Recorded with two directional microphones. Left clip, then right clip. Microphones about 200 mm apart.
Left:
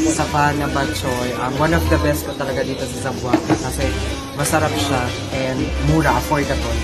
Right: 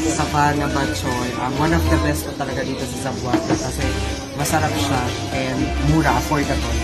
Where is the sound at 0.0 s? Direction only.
Centre (ahead or behind).